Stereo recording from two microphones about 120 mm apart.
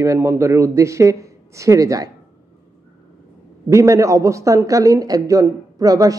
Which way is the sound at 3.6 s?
25° right (ahead or behind).